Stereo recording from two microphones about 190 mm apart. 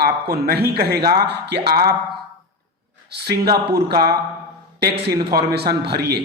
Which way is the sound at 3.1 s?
60° right (ahead or behind).